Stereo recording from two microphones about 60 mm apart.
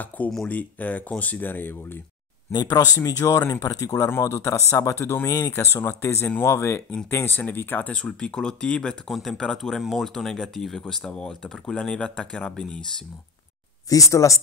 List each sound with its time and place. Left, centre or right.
0.1 s speech: left
2.6 s speech: left
3.0 s speech: left
4.1 s speech: left
7.1 s speech: left
7.9 s speech: centre
13.8 s speech: left